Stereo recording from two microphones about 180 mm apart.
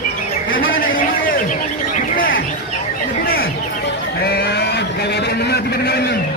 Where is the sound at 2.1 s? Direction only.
50° left (ahead or behind).